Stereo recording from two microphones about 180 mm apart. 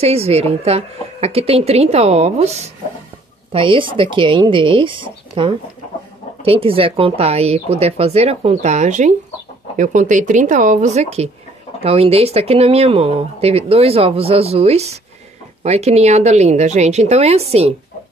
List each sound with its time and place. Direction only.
0.0 s speech: 35° right (ahead or behind)